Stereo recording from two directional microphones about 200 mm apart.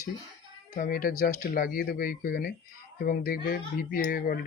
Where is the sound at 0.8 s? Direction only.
45° left (ahead or behind).